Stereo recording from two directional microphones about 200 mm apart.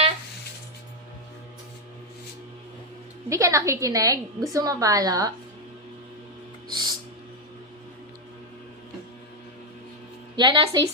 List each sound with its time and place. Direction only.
3.2 s a woman's voice: 15° right (ahead or behind)
6.7 s music: 20° right (ahead or behind)
10.3 s a woman's voice: 25° right (ahead or behind)